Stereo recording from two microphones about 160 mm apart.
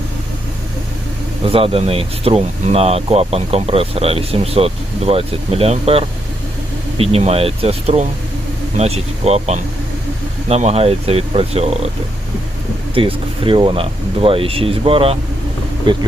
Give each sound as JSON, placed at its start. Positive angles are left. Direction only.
{"t": 1.5, "sound": "speech", "side_deg": -35}
{"t": 12.9, "sound": "speech", "side_deg": -35}